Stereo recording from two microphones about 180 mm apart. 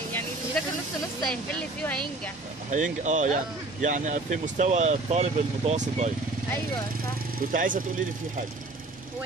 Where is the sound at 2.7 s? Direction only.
45° right (ahead or behind).